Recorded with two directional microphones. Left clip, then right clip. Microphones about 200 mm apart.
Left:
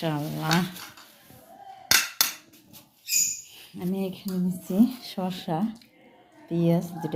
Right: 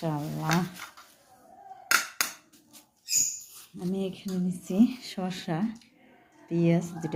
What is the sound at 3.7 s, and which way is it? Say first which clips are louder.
Speech: left 1 dB; 5° left (ahead or behind).